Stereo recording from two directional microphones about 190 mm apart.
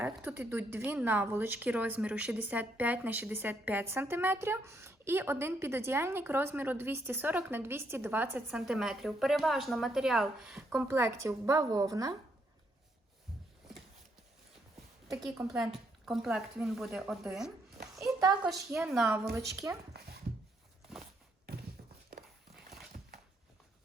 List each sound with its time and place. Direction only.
0.0 s a woman's voice: 10° right (ahead or behind)
15.4 s a woman's voice: 5° right (ahead or behind)
17.9 s a sound: 20° right (ahead or behind)
18.7 s a woman's voice: centre (ahead or behind)
19.3 s a woman's voice: 15° right (ahead or behind)
19.9 s dog: 60° right (ahead or behind)